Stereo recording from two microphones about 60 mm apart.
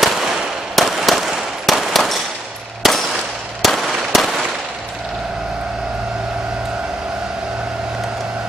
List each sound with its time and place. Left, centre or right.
0.7 s firecracker: centre
2.8 s a sound: centre
3.6 s firecracker: centre